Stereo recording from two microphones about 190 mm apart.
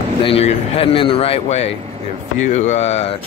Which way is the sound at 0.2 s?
30° left (ahead or behind).